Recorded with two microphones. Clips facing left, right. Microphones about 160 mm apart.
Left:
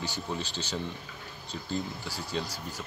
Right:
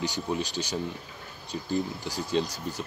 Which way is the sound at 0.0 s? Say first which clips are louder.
Right 5 dB; 15° right (ahead or behind).